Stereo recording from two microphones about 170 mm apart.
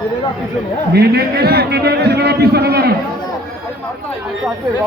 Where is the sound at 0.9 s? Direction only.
70° right (ahead or behind).